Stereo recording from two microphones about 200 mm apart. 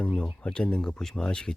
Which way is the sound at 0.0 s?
5° left (ahead or behind).